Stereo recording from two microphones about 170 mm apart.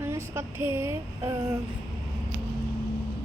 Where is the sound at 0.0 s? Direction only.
15° right (ahead or behind).